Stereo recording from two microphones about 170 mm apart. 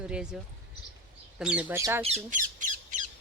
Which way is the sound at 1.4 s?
5° right (ahead or behind).